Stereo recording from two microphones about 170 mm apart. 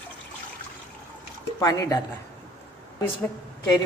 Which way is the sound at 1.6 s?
20° left (ahead or behind).